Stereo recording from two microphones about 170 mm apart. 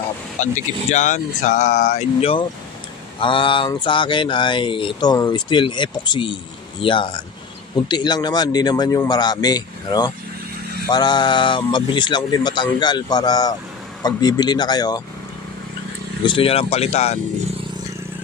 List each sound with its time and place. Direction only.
0.3 s speech: 45° left (ahead or behind); by 15.0 s 25° left (ahead or behind)
16.2 s speech: 30° left (ahead or behind)